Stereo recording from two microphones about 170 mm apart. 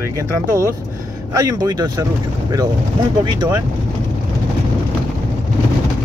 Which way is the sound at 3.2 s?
25° right (ahead or behind).